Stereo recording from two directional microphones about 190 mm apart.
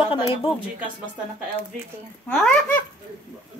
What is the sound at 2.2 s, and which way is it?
Speech, 5° left (ahead or behind).